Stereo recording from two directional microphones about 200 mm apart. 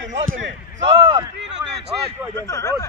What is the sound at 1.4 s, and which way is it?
Speech, 60° right (ahead or behind).